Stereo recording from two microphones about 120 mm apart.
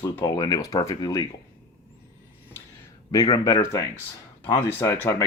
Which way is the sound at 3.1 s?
30° left (ahead or behind).